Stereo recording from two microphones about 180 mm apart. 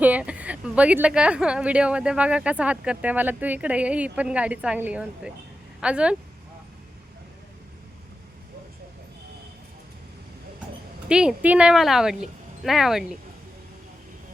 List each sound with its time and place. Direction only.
0.0 s a woman's voice: 10° right (ahead or behind)
11.1 s speech: 5° right (ahead or behind)